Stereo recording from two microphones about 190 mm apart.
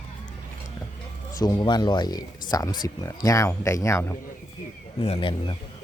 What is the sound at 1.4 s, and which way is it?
Speech, 20° left (ahead or behind).